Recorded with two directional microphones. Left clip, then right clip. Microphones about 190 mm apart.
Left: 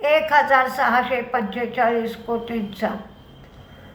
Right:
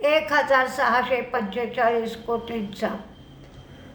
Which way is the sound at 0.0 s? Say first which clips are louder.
Left 4 dB; 15° right (ahead or behind).